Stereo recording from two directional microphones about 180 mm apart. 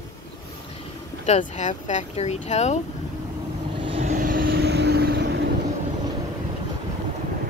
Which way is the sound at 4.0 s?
45° right (ahead or behind).